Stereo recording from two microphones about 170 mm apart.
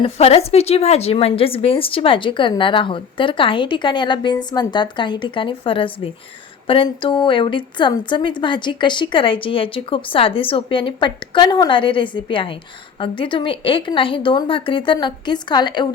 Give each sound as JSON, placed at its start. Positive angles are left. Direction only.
{"t": 0.0, "sound": "a woman's voice", "side_deg": 35}